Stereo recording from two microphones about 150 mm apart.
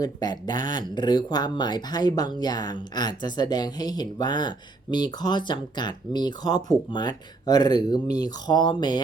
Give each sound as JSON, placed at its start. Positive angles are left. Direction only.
{"t": 0.0, "sound": "speech", "side_deg": 25}